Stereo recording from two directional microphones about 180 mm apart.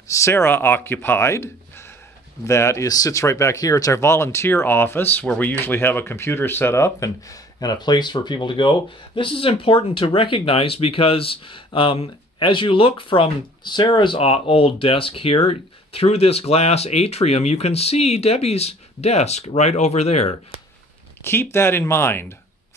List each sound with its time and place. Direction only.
0.1 s speech: 15° left (ahead or behind); by 20.3 s 35° left (ahead or behind)
21.2 s speech: 15° left (ahead or behind)